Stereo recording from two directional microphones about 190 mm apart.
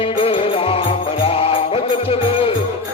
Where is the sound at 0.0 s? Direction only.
30° left (ahead or behind).